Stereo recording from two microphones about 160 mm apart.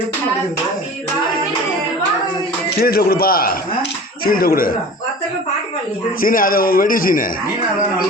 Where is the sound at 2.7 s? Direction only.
70° left (ahead or behind).